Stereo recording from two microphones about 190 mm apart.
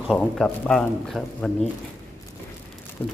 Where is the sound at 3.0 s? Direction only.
10° left (ahead or behind).